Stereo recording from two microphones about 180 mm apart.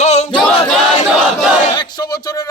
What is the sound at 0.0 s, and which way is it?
Battle cry, 40° left (ahead or behind).